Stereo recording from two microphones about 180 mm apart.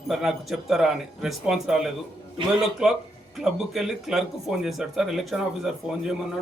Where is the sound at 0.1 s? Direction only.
Centre (ahead or behind).